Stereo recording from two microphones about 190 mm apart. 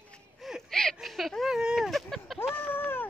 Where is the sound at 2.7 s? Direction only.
10° left (ahead or behind).